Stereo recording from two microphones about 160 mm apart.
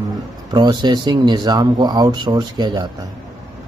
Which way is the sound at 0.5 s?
25° right (ahead or behind).